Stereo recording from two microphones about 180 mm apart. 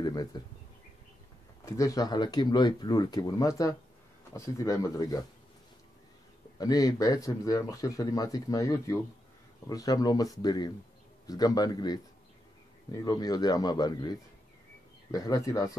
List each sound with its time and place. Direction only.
0.0 s speech: 25° left (ahead or behind)
1.7 s speech: 20° left (ahead or behind)
6.6 s speech: 20° left (ahead or behind)